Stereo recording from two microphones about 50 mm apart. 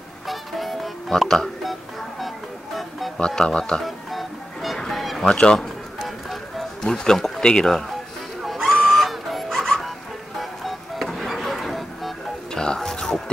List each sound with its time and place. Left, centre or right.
0.3 s music: centre
3.2 s speech: centre
3.8 s music: centre
5.3 s speech: centre
6.8 s speech: centre
8.4 s music: centre
12.5 s music: centre